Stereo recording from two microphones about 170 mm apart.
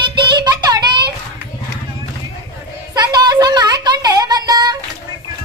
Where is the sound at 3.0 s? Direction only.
25° right (ahead or behind).